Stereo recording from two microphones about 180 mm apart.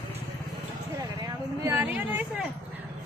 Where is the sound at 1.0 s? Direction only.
20° right (ahead or behind).